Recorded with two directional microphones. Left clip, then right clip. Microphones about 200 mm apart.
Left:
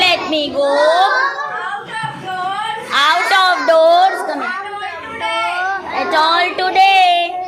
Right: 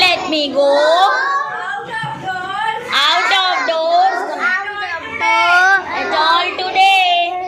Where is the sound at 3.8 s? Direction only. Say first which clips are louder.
Left 5 dB; 45° left (ahead or behind).